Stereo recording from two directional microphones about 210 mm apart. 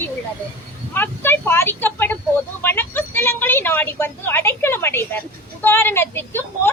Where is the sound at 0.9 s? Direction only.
10° left (ahead or behind).